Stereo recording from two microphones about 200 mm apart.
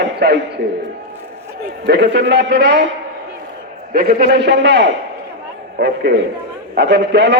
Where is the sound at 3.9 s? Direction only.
50° right (ahead or behind).